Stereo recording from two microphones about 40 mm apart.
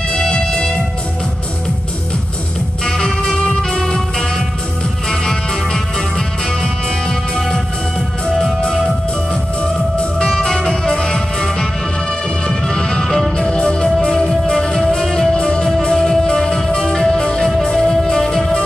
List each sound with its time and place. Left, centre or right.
0.1 s music: centre
2.8 s music: centre
8.7 s music: centre
10.4 s music: centre